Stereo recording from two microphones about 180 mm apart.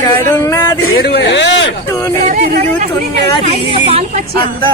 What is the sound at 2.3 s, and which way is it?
Speech, 45° right (ahead or behind).